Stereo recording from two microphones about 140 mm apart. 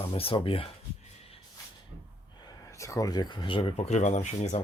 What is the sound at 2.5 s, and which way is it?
Speech, 20° left (ahead or behind).